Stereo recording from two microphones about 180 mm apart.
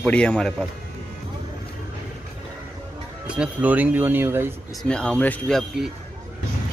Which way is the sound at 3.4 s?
10° right (ahead or behind).